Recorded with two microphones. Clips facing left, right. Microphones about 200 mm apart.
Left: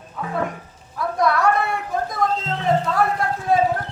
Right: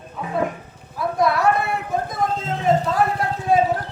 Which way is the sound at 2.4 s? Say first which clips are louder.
Right 1 dB; 50° right (ahead or behind).